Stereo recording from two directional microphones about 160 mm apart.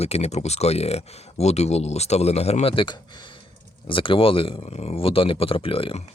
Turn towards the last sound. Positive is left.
turn(degrees=35)  # may be behind; listen again after turning